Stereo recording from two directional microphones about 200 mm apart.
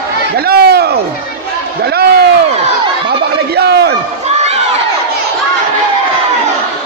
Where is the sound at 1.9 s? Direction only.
50° right (ahead or behind).